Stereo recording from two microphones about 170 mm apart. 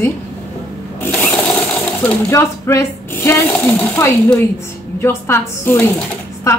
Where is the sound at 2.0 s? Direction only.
15° left (ahead or behind).